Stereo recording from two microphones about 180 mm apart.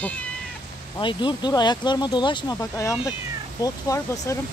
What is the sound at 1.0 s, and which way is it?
Speech, 25° left (ahead or behind).